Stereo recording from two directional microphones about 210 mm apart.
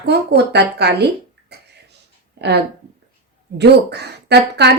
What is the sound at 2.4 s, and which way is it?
Speech, 50° right (ahead or behind).